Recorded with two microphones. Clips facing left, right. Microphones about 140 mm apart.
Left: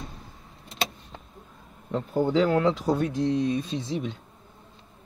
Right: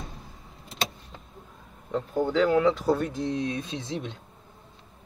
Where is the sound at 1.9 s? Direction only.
10° left (ahead or behind).